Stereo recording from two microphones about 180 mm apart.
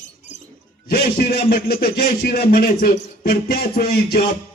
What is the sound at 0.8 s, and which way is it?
Speech, 60° left (ahead or behind).